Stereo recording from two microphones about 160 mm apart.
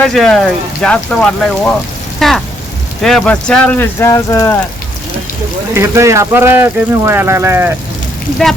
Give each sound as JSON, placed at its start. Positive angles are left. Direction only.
{"t": 0.0, "sound": "speech", "side_deg": 5}
{"t": 5.7, "sound": "speech", "side_deg": -20}